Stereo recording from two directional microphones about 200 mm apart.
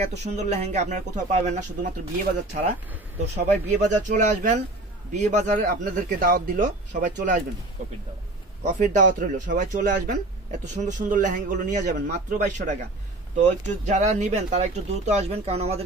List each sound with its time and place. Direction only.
0.2 s speech: 35° right (ahead or behind)
3.3 s speech: 40° right (ahead or behind)
8.6 s speech: 40° right (ahead or behind)